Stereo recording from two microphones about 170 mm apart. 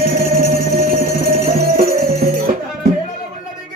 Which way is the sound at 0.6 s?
55° right (ahead or behind).